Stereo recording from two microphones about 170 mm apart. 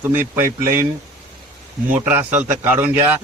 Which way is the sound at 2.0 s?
10° right (ahead or behind).